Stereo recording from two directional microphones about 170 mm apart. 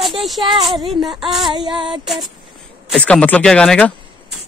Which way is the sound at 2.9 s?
5° left (ahead or behind).